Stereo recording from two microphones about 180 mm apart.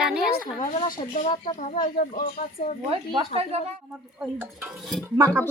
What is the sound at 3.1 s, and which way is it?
Speech, 30° right (ahead or behind).